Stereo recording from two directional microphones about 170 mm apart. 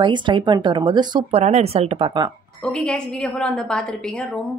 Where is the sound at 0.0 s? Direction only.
25° right (ahead or behind).